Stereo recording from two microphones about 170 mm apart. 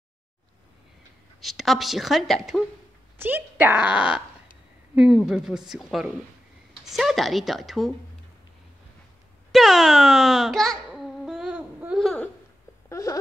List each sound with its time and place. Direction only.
1.4 s a woman's voice: centre (ahead or behind)
3.2 s a woman's voice: 10° right (ahead or behind)
9.5 s a woman's voice: centre (ahead or behind)
10.9 s a sound: 5° right (ahead or behind)
12.9 s wail: 20° left (ahead or behind)